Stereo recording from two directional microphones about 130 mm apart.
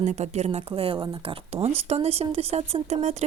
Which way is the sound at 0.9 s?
35° right (ahead or behind).